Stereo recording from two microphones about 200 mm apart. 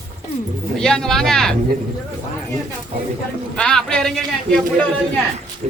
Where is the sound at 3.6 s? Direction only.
5° left (ahead or behind).